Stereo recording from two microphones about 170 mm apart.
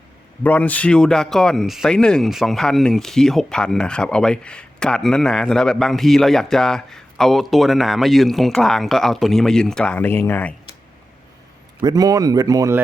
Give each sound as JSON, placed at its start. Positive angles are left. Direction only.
{"t": 0.4, "sound": "speech", "side_deg": 10}
{"t": 11.8, "sound": "speech", "side_deg": -20}